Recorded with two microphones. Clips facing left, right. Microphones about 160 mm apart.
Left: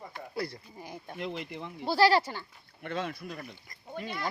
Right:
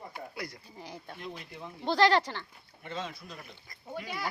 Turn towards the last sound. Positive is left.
turn(degrees=-5)  # may be behind; listen again after turning